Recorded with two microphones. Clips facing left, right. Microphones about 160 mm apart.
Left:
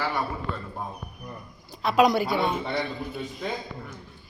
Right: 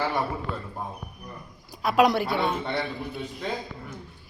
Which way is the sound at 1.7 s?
10° right (ahead or behind).